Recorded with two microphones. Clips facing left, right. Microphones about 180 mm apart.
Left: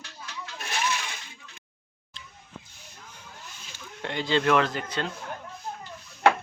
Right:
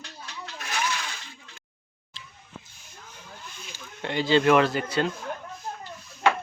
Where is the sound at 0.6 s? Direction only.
30° left (ahead or behind).